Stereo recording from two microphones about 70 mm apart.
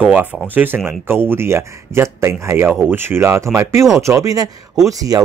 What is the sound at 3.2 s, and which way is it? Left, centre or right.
Speech, right.